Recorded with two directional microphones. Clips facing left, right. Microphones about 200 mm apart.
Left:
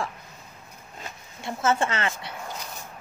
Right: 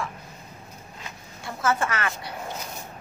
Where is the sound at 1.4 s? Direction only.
25° left (ahead or behind).